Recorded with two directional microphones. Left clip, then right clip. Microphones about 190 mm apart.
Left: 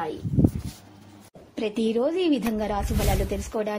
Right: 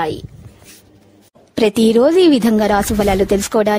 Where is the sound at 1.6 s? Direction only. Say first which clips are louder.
Right 13 dB; 70° right (ahead or behind).